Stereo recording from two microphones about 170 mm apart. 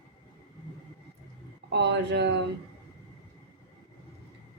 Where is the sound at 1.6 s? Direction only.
85° right.